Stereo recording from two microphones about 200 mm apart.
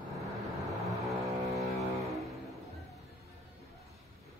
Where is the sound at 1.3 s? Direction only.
15° right (ahead or behind).